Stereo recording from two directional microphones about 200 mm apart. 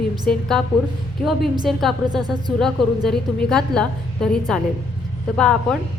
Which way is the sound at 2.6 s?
Centre (ahead or behind).